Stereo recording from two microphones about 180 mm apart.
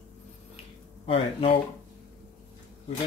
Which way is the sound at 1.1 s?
30° left (ahead or behind).